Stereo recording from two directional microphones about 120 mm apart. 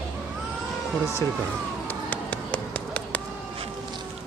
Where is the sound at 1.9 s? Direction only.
15° left (ahead or behind).